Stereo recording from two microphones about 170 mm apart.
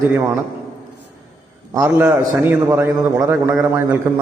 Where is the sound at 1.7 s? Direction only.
15° right (ahead or behind).